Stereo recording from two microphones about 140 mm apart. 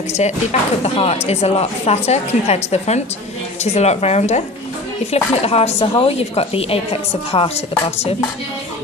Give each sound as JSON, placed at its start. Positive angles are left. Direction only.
{"t": 0.2, "sound": "speech", "side_deg": 50}